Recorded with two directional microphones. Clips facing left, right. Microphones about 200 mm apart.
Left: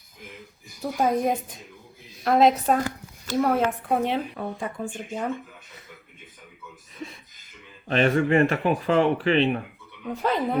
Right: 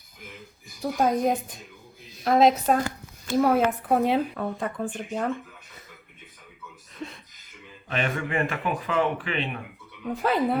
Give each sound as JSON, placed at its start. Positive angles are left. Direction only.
{"t": 0.8, "sound": "a woman's voice", "side_deg": 5}
{"t": 4.4, "sound": "speech", "side_deg": 5}
{"t": 7.9, "sound": "speech", "side_deg": 35}
{"t": 10.1, "sound": "speech", "side_deg": -10}